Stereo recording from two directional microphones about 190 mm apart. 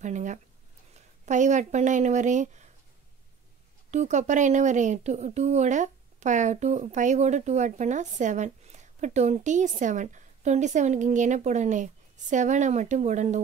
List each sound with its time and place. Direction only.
0.0 s speech: 40° right (ahead or behind)
3.9 s speech: 40° right (ahead or behind)